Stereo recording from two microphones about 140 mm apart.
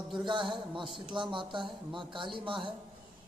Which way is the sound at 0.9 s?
35° right (ahead or behind).